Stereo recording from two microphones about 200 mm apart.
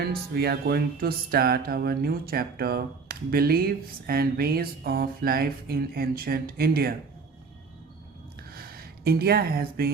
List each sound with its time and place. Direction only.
0.0 s speech: 55° right (ahead or behind)
8.5 s speech: 50° right (ahead or behind)